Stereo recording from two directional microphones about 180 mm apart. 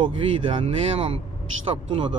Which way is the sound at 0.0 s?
30° right (ahead or behind).